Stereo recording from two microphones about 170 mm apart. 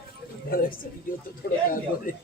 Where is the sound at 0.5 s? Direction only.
60° left (ahead or behind).